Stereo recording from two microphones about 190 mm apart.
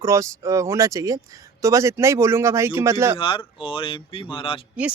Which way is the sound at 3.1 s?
25° left (ahead or behind).